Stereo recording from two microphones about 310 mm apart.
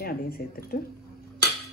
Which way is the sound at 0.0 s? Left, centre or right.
Left.